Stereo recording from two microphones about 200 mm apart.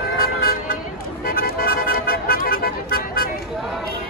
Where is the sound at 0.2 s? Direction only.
50° left (ahead or behind).